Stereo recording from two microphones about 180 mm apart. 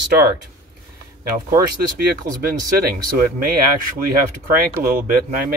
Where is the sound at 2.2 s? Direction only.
15° right (ahead or behind).